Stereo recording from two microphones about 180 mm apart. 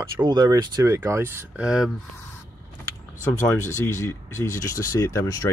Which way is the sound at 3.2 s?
15° left (ahead or behind).